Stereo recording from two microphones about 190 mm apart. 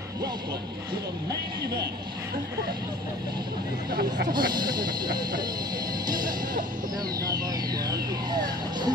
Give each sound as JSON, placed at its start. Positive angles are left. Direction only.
{"t": 3.9, "sound": "speech", "side_deg": -50}
{"t": 4.3, "sound": "speech", "side_deg": -20}